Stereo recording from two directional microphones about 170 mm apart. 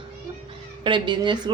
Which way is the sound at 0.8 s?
30° right (ahead or behind).